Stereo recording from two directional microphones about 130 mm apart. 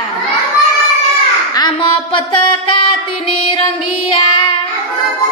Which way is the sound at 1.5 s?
35° left (ahead or behind).